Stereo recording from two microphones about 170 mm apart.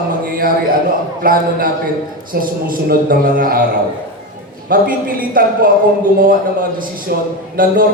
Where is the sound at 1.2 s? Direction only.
55° right (ahead or behind).